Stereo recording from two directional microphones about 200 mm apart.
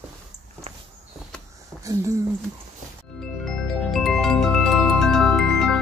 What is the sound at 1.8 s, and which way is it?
Speech, 15° right (ahead or behind).